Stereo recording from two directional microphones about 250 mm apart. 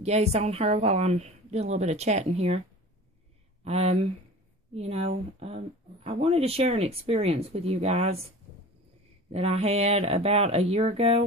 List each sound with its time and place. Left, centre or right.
0.0 s speech: right
3.6 s speech: right
9.3 s speech: right